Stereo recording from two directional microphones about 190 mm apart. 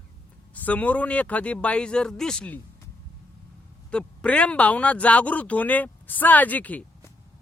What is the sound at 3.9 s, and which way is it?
Speech, 5° left (ahead or behind).